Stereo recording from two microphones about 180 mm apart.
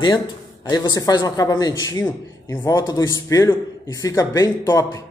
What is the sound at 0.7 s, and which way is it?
A man's voice, 20° left (ahead or behind).